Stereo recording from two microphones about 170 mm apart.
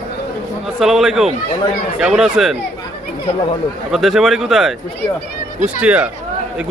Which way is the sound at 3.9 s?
Centre (ahead or behind).